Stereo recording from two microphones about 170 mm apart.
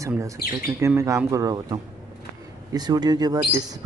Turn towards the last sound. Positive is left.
turn(degrees=-20)  # may be behind; listen again after turning